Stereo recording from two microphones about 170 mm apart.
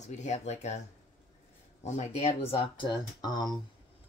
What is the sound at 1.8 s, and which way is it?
Speech, 40° left (ahead or behind).